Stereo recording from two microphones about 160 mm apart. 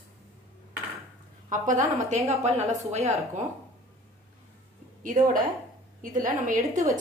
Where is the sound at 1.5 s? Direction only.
55° right (ahead or behind).